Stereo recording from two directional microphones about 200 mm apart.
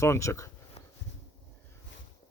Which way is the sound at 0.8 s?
30° left (ahead or behind).